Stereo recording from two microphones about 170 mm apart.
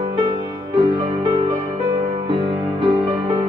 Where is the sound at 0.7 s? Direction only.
30° right (ahead or behind).